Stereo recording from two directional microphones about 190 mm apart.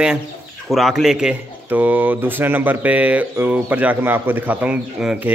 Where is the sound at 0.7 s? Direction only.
Centre (ahead or behind).